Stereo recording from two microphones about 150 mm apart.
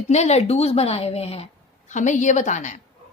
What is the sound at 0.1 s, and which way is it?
A woman's voice, 45° left (ahead or behind).